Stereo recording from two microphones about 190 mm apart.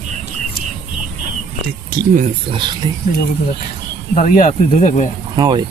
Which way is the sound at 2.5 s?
25° right (ahead or behind).